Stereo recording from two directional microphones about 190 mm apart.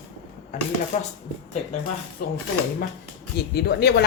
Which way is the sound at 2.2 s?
50° left (ahead or behind).